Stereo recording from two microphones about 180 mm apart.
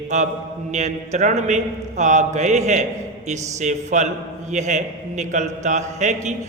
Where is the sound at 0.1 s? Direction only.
45° right (ahead or behind).